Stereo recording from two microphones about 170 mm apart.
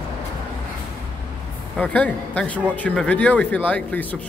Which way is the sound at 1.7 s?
10° left (ahead or behind).